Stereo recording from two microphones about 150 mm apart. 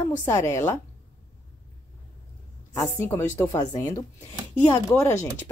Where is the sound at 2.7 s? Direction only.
15° left (ahead or behind).